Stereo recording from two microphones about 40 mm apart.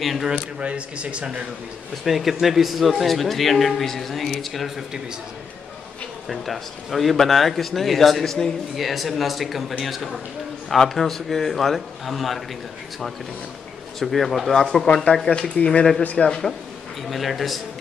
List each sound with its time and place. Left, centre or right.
0.0 s a man's voice: centre
0.6 s speech: right
2.0 s a man's voice: centre
4.6 s speech: centre
6.2 s a man's voice: centre
13.9 s a man's voice: centre
15.1 s speech: left
16.3 s speech: centre
17.1 s a man's voice: centre